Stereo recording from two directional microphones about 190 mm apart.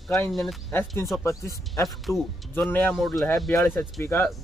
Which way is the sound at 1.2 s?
15° left (ahead or behind).